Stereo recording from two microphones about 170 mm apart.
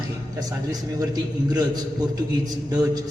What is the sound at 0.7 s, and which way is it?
A man's voice, 20° right (ahead or behind).